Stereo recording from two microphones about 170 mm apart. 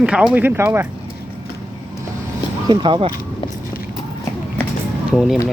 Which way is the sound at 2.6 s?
30° right (ahead or behind).